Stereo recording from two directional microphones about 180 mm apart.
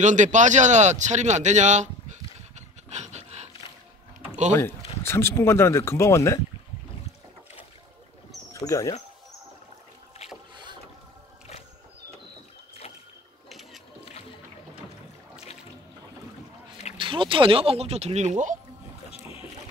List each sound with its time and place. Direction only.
0.0 s a sound: 45° right (ahead or behind)
4.6 s speech: 15° left (ahead or behind)
8.5 s speech: 20° left (ahead or behind)
10.5 s boat: 25° right (ahead or behind)
16.9 s speech: 30° right (ahead or behind)